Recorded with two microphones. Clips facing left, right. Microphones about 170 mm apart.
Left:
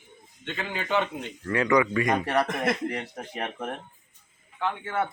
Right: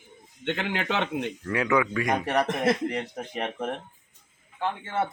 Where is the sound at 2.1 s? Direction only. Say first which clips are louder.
Right 2 dB; 15° right (ahead or behind).